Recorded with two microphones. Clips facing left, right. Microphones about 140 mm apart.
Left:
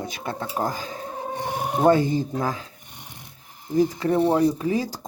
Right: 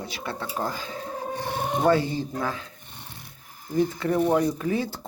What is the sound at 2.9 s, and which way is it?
Wood, 15° left (ahead or behind).